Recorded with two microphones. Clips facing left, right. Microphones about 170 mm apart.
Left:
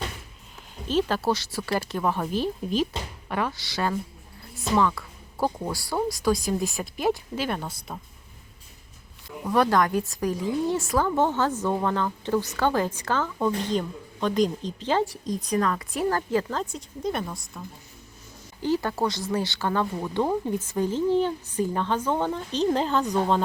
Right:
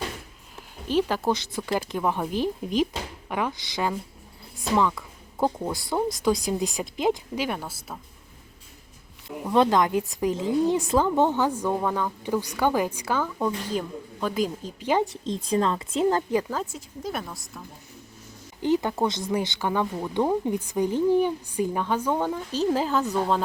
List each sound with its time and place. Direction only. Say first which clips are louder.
0.9 s speech: even; 15° right (ahead or behind)
4.7 s a sound: even; 15° right (ahead or behind)
5.5 s speech: right 2 dB; 5° right (ahead or behind)
5.7 s speech: right 1 dB; 20° right (ahead or behind); by 7.9 s 5° right (ahead or behind)
9.5 s speech: right 1 dB; 20° right (ahead or behind); by 17.6 s centre (ahead or behind)
18.6 s a woman's voice: right 2 dB; 20° right (ahead or behind)